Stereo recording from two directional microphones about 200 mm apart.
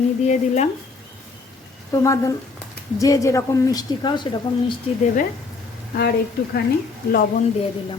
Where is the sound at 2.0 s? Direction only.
15° left (ahead or behind).